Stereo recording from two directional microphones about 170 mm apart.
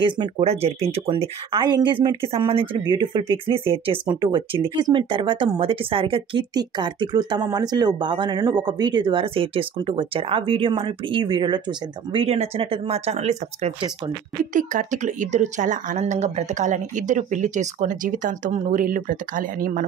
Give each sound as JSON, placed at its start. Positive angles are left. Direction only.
{"t": 0.0, "sound": "speech", "side_deg": -35}
{"t": 14.4, "sound": "speech", "side_deg": -50}